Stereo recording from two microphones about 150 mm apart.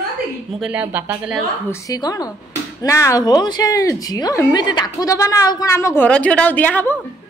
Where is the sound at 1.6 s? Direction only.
25° left (ahead or behind).